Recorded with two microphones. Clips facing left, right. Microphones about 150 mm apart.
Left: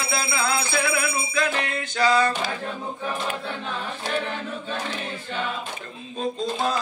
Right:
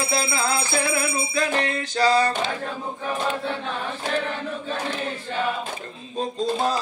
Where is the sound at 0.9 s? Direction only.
35° right (ahead or behind).